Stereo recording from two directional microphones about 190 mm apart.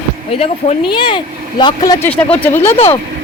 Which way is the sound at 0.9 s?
25° left (ahead or behind).